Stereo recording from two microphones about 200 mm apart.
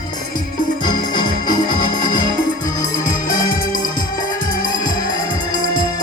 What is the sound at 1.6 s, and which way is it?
Music, 40° left (ahead or behind).